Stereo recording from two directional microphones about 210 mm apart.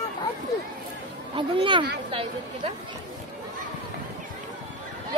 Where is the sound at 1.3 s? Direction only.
25° right (ahead or behind).